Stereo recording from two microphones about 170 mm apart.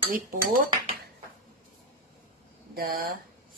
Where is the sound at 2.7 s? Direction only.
60° right (ahead or behind).